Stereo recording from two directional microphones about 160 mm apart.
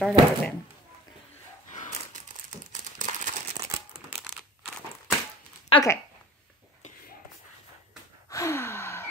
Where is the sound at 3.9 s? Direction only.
5° right (ahead or behind).